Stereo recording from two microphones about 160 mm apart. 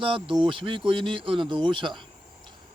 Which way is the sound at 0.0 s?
30° right (ahead or behind).